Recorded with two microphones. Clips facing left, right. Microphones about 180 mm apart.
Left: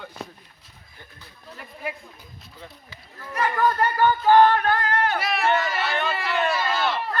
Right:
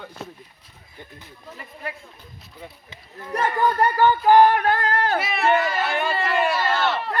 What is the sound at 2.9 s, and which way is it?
Singing, 20° right (ahead or behind).